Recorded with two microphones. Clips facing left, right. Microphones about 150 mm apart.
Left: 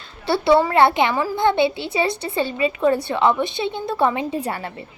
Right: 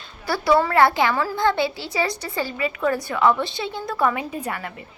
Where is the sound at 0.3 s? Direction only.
25° left (ahead or behind).